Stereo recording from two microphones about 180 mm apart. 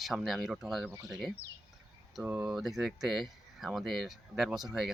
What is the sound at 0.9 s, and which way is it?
Speech, 20° right (ahead or behind).